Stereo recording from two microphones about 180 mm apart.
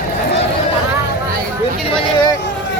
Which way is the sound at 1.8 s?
25° left (ahead or behind).